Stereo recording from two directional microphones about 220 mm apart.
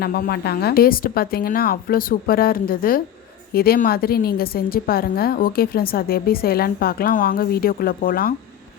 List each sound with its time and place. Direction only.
0.0 s a woman's voice: 45° left (ahead or behind)